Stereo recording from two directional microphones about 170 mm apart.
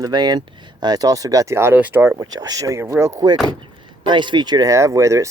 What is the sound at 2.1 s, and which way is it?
Speech, 25° right (ahead or behind).